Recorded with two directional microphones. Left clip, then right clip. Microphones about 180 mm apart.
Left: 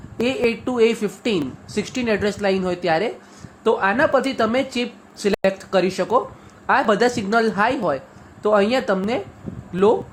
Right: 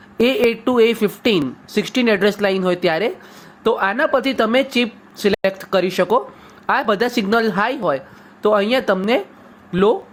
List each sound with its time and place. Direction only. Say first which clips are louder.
0.2 s speech: right 5 dB; 25° right (ahead or behind)